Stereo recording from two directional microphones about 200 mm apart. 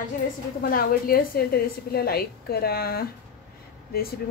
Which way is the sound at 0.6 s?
45° left (ahead or behind).